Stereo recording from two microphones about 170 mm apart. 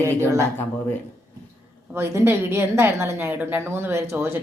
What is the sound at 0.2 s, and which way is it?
Speech, 20° right (ahead or behind).